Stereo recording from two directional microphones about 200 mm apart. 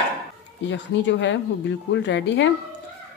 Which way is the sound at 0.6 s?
65° left (ahead or behind).